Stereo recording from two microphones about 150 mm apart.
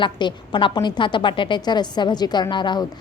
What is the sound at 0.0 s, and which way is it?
A woman's voice, 30° left (ahead or behind).